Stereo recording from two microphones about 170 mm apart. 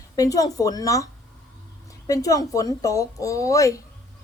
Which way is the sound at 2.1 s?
20° left (ahead or behind).